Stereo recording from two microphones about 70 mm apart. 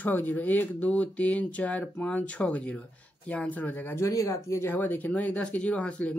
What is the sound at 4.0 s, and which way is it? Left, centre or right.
Speech, left.